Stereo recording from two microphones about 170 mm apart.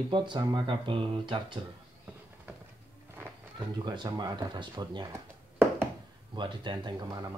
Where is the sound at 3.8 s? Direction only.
25° right (ahead or behind).